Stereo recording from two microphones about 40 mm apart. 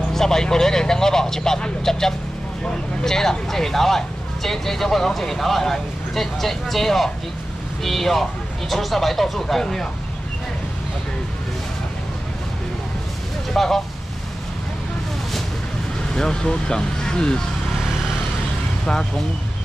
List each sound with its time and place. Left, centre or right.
0.1 s speech: centre
13.5 s speech: centre
16.2 s speech: centre